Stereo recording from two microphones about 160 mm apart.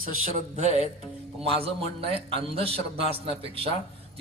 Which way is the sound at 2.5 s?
35° right (ahead or behind).